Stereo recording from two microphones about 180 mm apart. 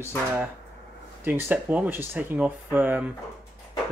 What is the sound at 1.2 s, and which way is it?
Speech, 10° right (ahead or behind).